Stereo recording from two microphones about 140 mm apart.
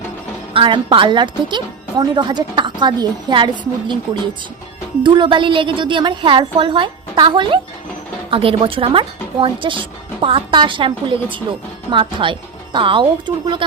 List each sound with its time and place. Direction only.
0.5 s a woman's voice: 35° right (ahead or behind)